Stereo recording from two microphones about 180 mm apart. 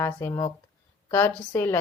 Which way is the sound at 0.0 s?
15° left (ahead or behind).